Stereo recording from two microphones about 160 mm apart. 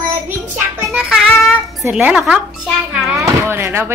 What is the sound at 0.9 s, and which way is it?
A woman's voice, 5° right (ahead or behind).